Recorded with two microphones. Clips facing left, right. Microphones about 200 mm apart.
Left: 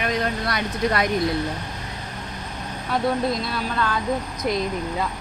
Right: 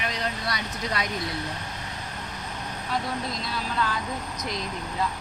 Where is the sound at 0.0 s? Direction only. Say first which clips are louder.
Left 6 dB; 55° left (ahead or behind).